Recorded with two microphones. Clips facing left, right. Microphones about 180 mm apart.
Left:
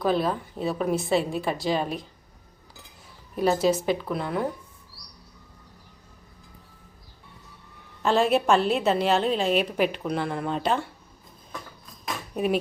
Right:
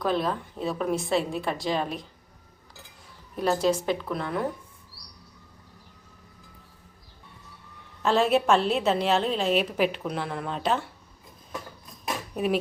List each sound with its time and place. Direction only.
0.0 s a woman's voice: 5° left (ahead or behind)
3.3 s a woman's voice: 5° left (ahead or behind)
8.0 s a woman's voice: centre (ahead or behind)
12.3 s speech: centre (ahead or behind)